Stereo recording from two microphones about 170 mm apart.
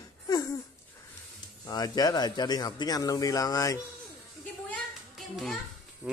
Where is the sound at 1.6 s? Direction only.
20° left (ahead or behind).